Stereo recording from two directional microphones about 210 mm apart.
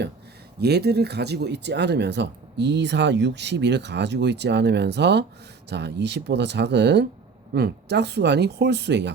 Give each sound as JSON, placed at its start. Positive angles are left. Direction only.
{"t": 0.6, "sound": "speech", "side_deg": -50}